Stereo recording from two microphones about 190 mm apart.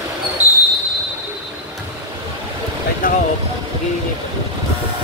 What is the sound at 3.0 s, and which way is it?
Speech, 45° left (ahead or behind).